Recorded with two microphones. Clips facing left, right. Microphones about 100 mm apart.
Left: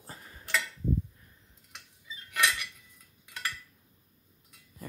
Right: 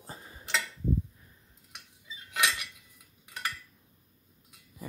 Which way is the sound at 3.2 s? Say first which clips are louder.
Right 1 dB; 15° right (ahead or behind).